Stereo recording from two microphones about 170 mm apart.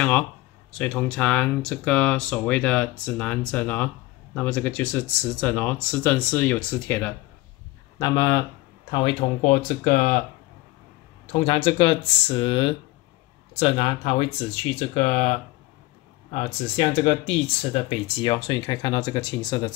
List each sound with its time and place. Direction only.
0.7 s speech: 5° left (ahead or behind)
8.0 s speech: 25° left (ahead or behind)
8.9 s speech: 35° left (ahead or behind)
11.3 s speech: 30° left (ahead or behind)